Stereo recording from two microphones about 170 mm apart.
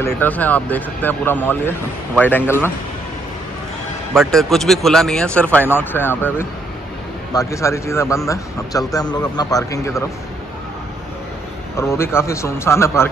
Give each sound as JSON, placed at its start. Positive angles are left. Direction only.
{"t": 0.0, "sound": "speech", "side_deg": 10}
{"t": 4.1, "sound": "speech", "side_deg": 0}
{"t": 11.7, "sound": "speech", "side_deg": 15}